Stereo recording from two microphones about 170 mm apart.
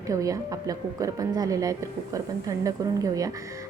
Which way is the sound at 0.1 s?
20° right (ahead or behind).